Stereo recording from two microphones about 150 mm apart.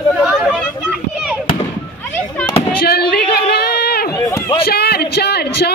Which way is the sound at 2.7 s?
90° left.